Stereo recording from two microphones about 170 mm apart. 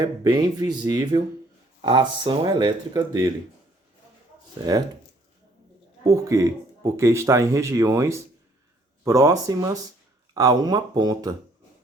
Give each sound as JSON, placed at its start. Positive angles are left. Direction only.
{"t": 0.0, "sound": "speech", "side_deg": -20}
{"t": 4.5, "sound": "speech", "side_deg": -20}
{"t": 6.1, "sound": "speech", "side_deg": -20}